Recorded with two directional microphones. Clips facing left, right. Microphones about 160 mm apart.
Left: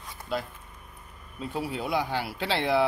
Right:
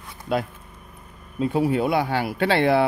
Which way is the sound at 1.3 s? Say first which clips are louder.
Right 11 dB; 65° right (ahead or behind).